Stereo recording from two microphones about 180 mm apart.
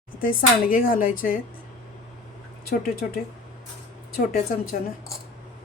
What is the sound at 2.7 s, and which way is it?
Speech, 55° left (ahead or behind).